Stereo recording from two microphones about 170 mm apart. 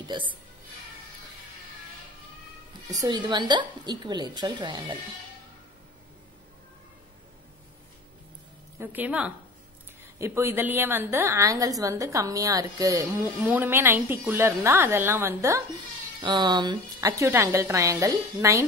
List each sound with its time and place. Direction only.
2.9 s a woman's voice: 25° right (ahead or behind)
8.7 s a woman's voice: 10° right (ahead or behind)
16.2 s a woman's voice: 25° right (ahead or behind)